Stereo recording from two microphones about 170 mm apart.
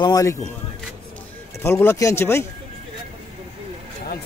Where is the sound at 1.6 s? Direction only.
15° left (ahead or behind).